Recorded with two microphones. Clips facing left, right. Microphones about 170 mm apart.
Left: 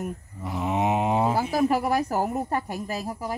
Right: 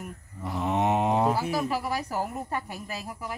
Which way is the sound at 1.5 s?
50° left (ahead or behind).